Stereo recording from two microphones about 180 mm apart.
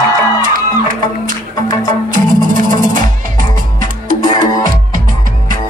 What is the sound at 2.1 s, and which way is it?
Music, 50° right (ahead or behind).